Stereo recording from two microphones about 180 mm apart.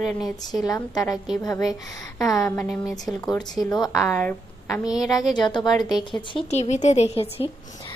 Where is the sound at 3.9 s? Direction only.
5° left (ahead or behind).